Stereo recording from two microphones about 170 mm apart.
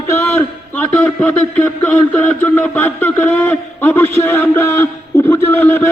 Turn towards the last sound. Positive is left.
turn(degrees=10)  # may be behind; listen again after turning